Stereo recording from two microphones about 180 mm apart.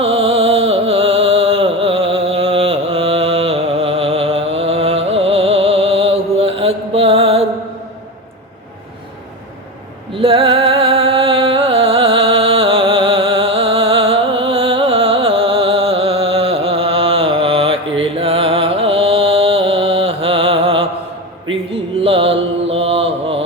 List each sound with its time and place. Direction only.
0.0 s music: 30° right (ahead or behind)
10.2 s music: 30° right (ahead or behind)
22.0 s mantra: 30° right (ahead or behind)